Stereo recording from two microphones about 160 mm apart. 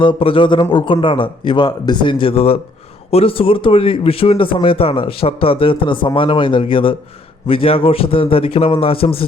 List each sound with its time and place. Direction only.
0.0 s speech: 35° left (ahead or behind)